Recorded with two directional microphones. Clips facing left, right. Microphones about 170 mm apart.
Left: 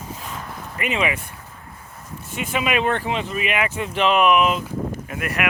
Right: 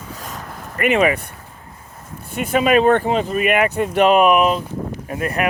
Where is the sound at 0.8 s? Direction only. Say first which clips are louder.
Right 8 dB; 55° right (ahead or behind).